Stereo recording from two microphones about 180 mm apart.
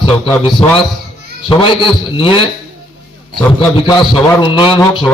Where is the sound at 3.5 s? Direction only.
30° left (ahead or behind).